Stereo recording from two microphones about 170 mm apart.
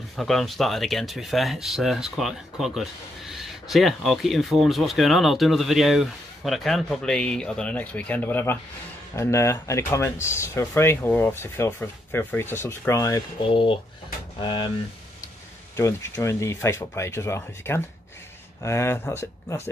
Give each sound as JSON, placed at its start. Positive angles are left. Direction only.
{"t": 0.1, "sound": "speech", "side_deg": 0}
{"t": 13.5, "sound": "speech", "side_deg": 30}
{"t": 15.7, "sound": "speech", "side_deg": 15}